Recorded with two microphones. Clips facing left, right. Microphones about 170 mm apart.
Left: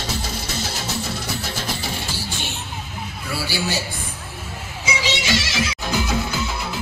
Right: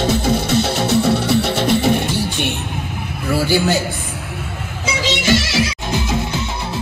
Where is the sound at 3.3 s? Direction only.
50° right (ahead or behind).